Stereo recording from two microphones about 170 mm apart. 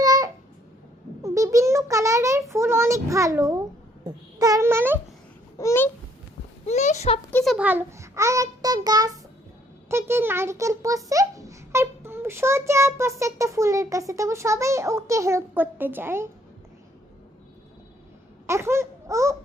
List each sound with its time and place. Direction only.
0.0 s babbling: 20° right (ahead or behind)
1.2 s a sound: 20° right (ahead or behind)
2.5 s a child's voice: 15° right (ahead or behind)
5.5 s babbling: 15° left (ahead or behind)
6.7 s a child's voice: 40° left (ahead or behind)
7.3 s a child's voice: centre (ahead or behind)
18.4 s a sound: 15° right (ahead or behind)